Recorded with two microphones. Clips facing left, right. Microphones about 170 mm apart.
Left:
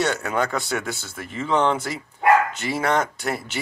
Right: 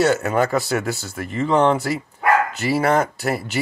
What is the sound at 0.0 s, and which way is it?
Speech, 5° right (ahead or behind).